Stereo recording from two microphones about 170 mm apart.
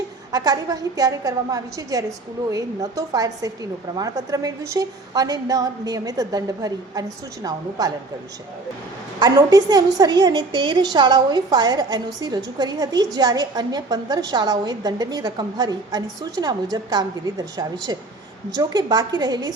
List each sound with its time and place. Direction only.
0.3 s a woman's voice: 20° right (ahead or behind)
9.1 s a woman's voice: 20° right (ahead or behind)